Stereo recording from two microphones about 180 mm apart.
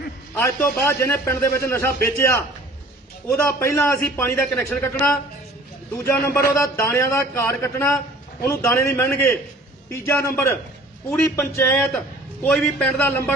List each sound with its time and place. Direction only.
0.4 s a man's voice: 15° left (ahead or behind)
3.4 s a man's voice: 10° left (ahead or behind)